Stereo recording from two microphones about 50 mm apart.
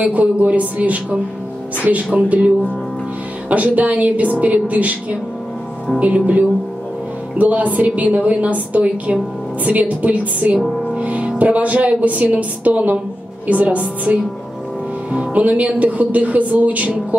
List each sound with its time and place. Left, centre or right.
0.0 s a woman's voice: right
5.9 s a woman's voice: right